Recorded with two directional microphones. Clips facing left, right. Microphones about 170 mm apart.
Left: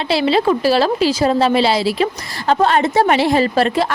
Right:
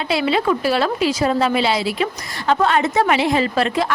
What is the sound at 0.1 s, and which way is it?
A woman's voice, 30° left (ahead or behind).